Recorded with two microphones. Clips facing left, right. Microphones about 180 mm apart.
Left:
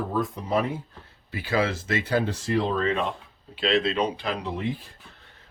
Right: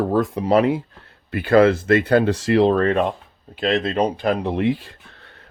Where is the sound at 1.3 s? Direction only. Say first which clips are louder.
Right 11 dB; 60° right (ahead or behind).